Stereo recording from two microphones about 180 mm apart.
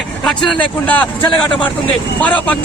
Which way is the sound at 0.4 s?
10° left (ahead or behind).